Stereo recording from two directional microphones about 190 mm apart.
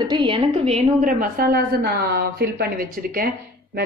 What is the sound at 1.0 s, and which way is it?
A woman's voice, 50° right (ahead or behind).